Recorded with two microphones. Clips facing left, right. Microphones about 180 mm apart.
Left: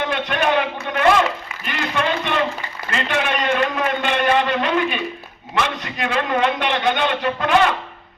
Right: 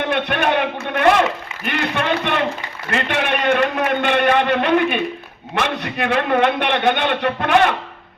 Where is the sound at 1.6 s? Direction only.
60° right (ahead or behind).